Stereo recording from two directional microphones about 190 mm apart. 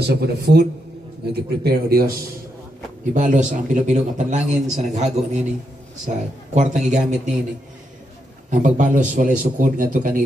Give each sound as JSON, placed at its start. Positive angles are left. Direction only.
{"t": 0.0, "sound": "a man's voice", "side_deg": -60}
{"t": 3.1, "sound": "a man's voice", "side_deg": -40}
{"t": 8.5, "sound": "a man's voice", "side_deg": -40}